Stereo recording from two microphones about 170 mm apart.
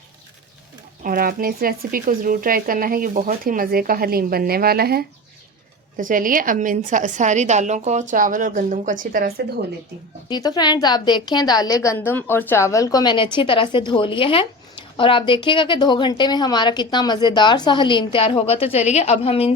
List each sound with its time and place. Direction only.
1.0 s speech: 55° right (ahead or behind)
6.0 s a woman's voice: 55° right (ahead or behind)
10.2 s a woman's voice: 25° left (ahead or behind)